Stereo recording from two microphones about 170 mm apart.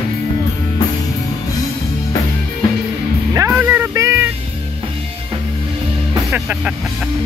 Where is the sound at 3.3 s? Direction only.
15° right (ahead or behind).